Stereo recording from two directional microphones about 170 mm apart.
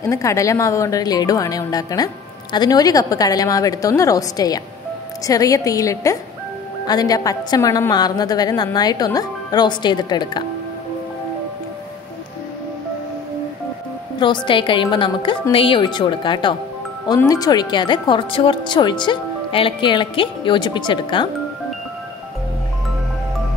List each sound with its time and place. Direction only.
0.0 s speech: 20° left (ahead or behind)
14.2 s speech: 25° left (ahead or behind)